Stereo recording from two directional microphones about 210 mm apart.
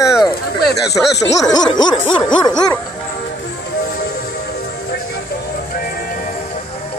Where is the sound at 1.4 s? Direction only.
20° left (ahead or behind).